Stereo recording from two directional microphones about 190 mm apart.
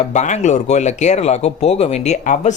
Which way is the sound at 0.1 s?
40° left (ahead or behind).